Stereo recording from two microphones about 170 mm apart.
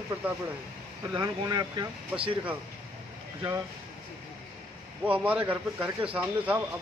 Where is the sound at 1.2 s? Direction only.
25° right (ahead or behind).